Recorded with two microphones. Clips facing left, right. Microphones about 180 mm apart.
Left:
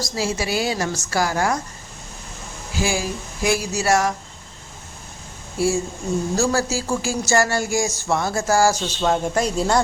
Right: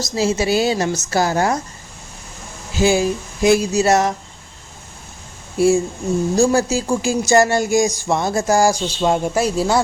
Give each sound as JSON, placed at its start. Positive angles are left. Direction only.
{"t": 0.0, "sound": "a woman's voice", "side_deg": -20}
{"t": 2.7, "sound": "a woman's voice", "side_deg": -20}
{"t": 5.5, "sound": "speech", "side_deg": -15}